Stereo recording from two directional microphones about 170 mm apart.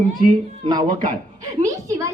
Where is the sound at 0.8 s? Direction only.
50° right (ahead or behind).